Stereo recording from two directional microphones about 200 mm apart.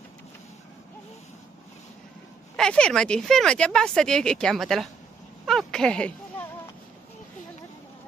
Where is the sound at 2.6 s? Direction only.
5° left (ahead or behind).